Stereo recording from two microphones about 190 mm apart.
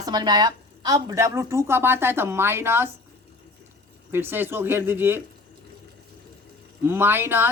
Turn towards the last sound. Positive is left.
turn(degrees=-10)  # may be behind; listen again after turning